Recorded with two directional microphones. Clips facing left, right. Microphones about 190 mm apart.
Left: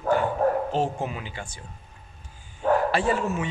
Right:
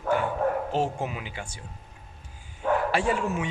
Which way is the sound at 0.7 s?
10° right (ahead or behind).